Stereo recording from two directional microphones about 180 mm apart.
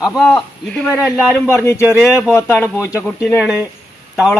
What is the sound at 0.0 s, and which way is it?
A man's voice, 5° left (ahead or behind).